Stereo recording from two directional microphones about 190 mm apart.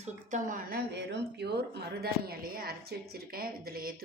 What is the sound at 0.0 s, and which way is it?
A woman's voice, 40° right (ahead or behind).